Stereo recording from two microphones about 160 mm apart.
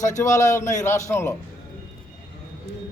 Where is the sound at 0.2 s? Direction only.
20° left (ahead or behind).